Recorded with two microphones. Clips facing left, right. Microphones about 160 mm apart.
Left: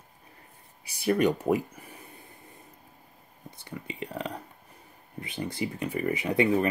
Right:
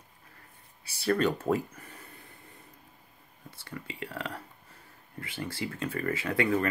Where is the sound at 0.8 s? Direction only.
15° left (ahead or behind).